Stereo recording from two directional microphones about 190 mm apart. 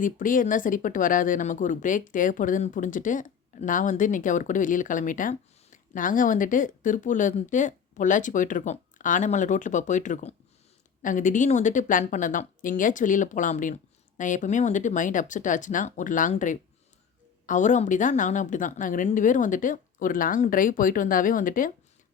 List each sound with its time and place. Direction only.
0.0 s speech: 45° left (ahead or behind)